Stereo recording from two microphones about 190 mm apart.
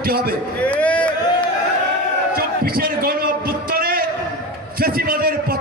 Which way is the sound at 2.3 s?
50° right (ahead or behind).